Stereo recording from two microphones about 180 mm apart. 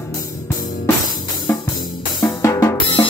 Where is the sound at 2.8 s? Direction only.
30° left (ahead or behind).